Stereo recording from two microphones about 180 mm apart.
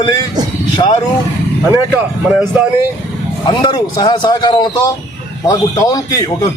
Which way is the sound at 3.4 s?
25° left (ahead or behind).